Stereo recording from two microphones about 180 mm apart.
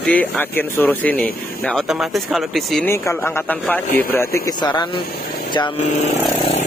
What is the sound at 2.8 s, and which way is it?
A man's voice, 15° left (ahead or behind).